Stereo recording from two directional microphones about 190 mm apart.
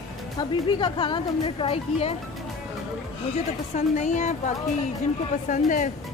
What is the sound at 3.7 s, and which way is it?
A woman's voice, 40° left (ahead or behind).